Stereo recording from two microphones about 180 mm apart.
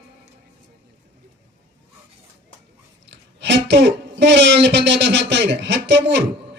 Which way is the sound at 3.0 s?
80° right.